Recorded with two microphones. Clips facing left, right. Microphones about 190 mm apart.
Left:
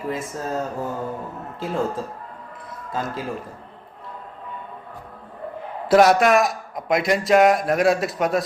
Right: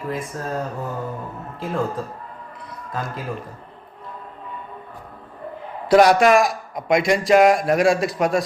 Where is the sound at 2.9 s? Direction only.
25° left (ahead or behind).